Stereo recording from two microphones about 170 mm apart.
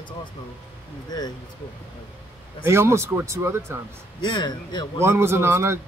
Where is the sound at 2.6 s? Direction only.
15° right (ahead or behind).